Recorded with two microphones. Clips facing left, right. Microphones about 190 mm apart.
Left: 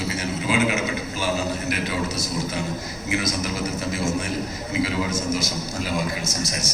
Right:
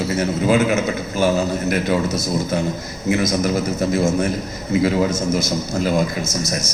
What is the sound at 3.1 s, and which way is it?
A man's voice, 45° right (ahead or behind).